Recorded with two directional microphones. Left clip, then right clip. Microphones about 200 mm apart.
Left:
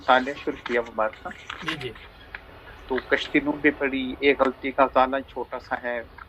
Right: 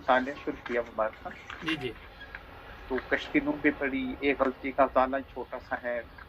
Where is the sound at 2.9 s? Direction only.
25° left (ahead or behind).